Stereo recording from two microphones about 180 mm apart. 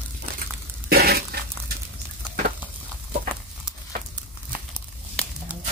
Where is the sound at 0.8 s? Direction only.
60° right (ahead or behind).